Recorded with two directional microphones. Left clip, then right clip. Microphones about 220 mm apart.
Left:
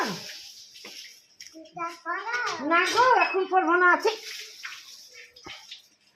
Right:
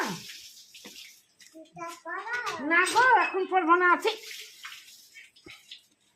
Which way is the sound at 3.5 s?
30° right (ahead or behind).